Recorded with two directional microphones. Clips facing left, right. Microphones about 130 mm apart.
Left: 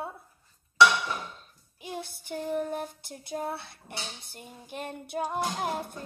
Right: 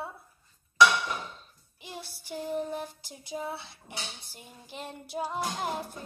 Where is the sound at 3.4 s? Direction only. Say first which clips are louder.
Left 3 dB; 55° left (ahead or behind).